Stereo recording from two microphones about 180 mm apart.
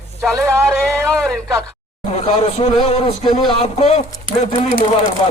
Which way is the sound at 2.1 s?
35° left (ahead or behind).